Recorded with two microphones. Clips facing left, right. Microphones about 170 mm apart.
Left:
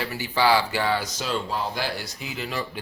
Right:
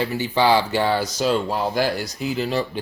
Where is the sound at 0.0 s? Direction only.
20° right (ahead or behind).